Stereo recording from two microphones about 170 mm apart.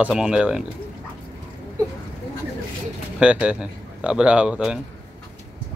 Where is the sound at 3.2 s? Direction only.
5° right (ahead or behind).